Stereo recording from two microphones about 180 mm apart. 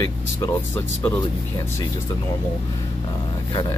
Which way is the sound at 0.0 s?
10° left (ahead or behind).